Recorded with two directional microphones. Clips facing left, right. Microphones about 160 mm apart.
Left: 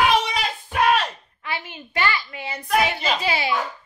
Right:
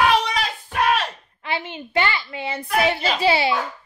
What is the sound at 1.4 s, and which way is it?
A woman's voice, 25° right (ahead or behind).